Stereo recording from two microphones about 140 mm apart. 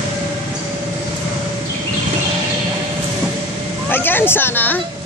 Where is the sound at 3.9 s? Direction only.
15° left (ahead or behind).